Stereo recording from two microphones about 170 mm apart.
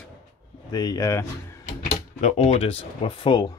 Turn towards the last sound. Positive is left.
turn(degrees=30)  # may be behind; listen again after turning